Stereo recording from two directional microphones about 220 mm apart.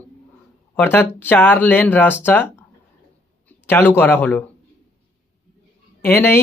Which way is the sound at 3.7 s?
10° left (ahead or behind).